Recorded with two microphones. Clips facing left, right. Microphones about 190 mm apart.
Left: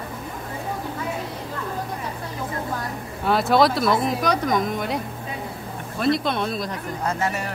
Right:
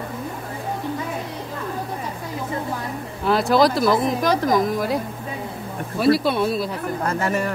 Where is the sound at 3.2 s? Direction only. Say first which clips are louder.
Right 1 dB; centre (ahead or behind).